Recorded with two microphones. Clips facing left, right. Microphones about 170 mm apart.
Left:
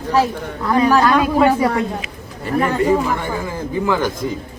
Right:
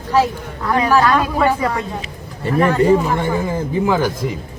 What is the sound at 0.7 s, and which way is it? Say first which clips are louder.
Speech: left 1 dB; 15° left (ahead or behind).